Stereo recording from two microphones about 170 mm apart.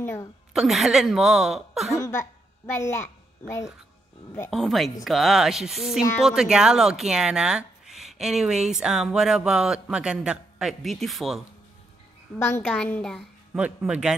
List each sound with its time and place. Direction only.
0.0 s a woman's voice: 15° left (ahead or behind)
0.5 s speech: centre (ahead or behind)
2.0 s a child's voice: 15° left (ahead or behind)
4.5 s speech: centre (ahead or behind)
12.4 s a woman's voice: 15° left (ahead or behind)
13.6 s speech: 5° right (ahead or behind)